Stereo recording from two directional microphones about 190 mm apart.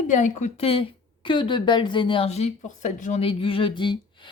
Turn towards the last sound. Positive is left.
turn(degrees=25)  # may be behind; listen again after turning